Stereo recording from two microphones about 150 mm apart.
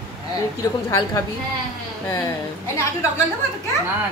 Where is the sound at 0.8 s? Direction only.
20° left (ahead or behind).